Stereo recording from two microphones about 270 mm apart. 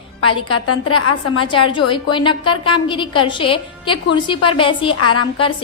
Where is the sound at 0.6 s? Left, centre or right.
Left.